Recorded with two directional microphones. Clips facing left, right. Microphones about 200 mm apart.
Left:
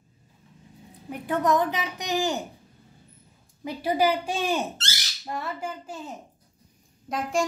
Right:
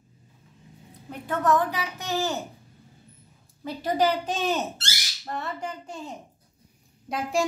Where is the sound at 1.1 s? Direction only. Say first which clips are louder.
Even; 15° left (ahead or behind).